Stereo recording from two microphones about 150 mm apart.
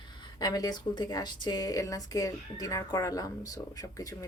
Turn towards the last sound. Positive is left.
turn(degrees=25)  # may be behind; listen again after turning